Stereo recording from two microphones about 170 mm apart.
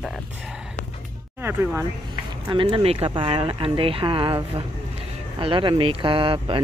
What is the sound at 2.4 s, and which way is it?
Speech, 30° right (ahead or behind).